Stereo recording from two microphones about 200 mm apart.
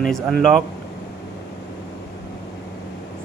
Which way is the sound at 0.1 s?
Centre (ahead or behind).